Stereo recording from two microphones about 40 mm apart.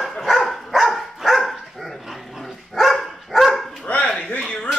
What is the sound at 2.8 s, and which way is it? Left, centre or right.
Dog, centre.